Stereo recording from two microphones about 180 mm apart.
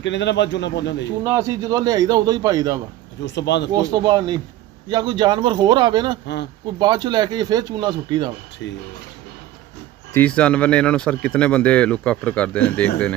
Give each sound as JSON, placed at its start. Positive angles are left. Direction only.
{"t": 0.0, "sound": "speech", "side_deg": 75}
{"t": 1.2, "sound": "speech", "side_deg": -15}
{"t": 3.3, "sound": "speech", "side_deg": 75}
{"t": 3.7, "sound": "speech", "side_deg": -25}
{"t": 10.1, "sound": "speech", "side_deg": 5}